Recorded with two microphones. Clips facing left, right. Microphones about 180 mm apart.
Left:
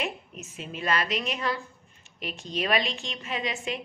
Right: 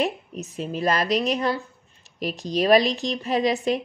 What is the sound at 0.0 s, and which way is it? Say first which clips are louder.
A woman's voice: right 8 dB; 35° right (ahead or behind).